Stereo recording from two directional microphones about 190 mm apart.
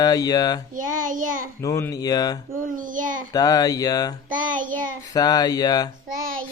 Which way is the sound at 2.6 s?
45° right (ahead or behind).